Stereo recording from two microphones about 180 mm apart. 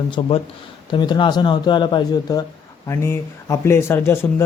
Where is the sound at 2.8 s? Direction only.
15° left (ahead or behind).